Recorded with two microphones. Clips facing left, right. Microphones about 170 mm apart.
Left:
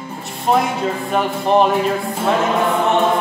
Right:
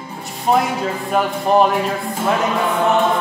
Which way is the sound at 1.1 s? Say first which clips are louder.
Even; centre (ahead or behind).